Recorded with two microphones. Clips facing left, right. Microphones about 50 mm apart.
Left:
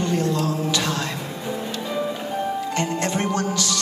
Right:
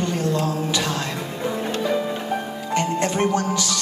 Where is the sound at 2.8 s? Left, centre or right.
Right.